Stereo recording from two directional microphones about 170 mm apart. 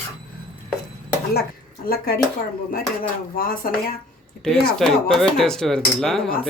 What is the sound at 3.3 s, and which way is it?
Speech, 60° left (ahead or behind).